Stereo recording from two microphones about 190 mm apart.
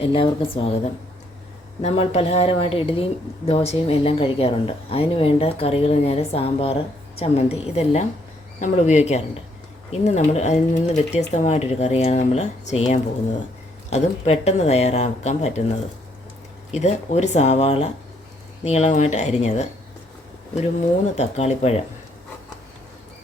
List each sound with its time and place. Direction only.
0.0 s speech: 30° left (ahead or behind)
1.8 s speech: 30° left (ahead or behind)
16.7 s speech: 35° left (ahead or behind)
21.2 s speech: 35° left (ahead or behind)